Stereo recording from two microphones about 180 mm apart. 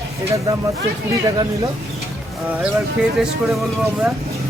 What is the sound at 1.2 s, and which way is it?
Speech, 20° right (ahead or behind).